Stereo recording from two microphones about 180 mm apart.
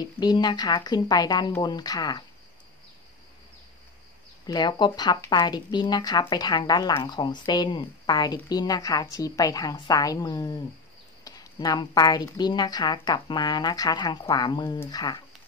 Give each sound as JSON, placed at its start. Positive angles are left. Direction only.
{"t": 0.0, "sound": "speech", "side_deg": 25}
{"t": 4.5, "sound": "speech", "side_deg": 25}